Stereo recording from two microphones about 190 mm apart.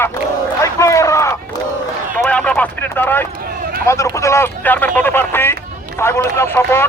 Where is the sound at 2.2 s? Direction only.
5° left (ahead or behind).